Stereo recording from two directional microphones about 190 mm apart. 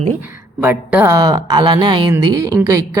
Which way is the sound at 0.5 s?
10° right (ahead or behind).